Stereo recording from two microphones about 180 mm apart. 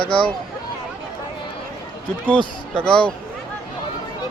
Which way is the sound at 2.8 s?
5° left (ahead or behind).